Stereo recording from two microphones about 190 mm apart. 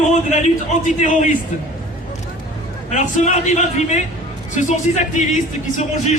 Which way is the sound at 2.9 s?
40° left (ahead or behind).